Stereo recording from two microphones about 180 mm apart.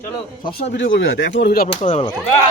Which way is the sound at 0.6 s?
80° left.